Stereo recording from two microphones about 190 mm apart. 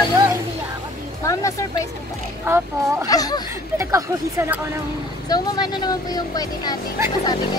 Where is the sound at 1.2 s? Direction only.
15° left (ahead or behind).